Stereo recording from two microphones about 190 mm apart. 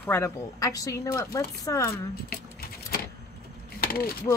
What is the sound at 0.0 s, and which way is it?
A woman's voice, 10° left (ahead or behind).